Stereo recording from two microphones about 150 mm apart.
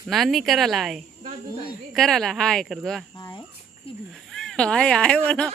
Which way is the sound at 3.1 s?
30° left (ahead or behind).